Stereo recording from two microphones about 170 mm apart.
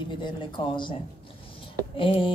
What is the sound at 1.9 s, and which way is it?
Speech, 30° left (ahead or behind).